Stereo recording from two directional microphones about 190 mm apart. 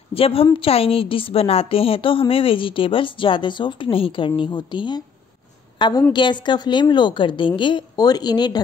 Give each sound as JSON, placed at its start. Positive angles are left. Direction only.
{"t": 0.1, "sound": "a woman's voice", "side_deg": 30}